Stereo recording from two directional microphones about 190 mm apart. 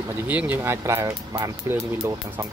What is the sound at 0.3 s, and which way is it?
Speech, 10° right (ahead or behind).